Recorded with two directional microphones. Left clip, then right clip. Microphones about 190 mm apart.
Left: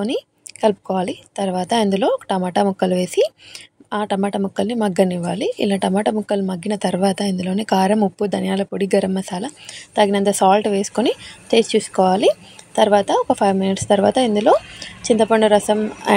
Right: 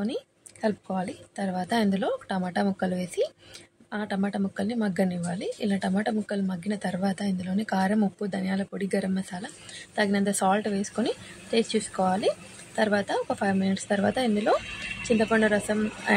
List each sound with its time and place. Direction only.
0.6 s a woman's voice: 40° left (ahead or behind)